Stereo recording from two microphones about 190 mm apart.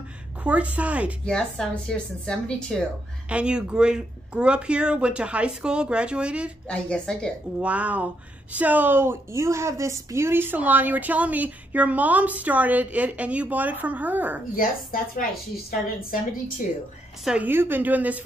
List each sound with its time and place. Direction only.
0.4 s a woman's voice: 5° right (ahead or behind)
1.2 s speech: 5° left (ahead or behind)
6.7 s speech: 5° left (ahead or behind)
7.6 s a woman's voice: 5° right (ahead or behind)
14.5 s a woman's voice: 50° left (ahead or behind)
17.2 s a woman's voice: 5° right (ahead or behind)